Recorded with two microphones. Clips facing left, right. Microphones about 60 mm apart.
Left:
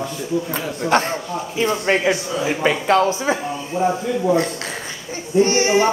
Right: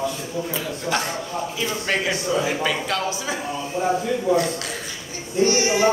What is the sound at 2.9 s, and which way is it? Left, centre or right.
A man's voice, left.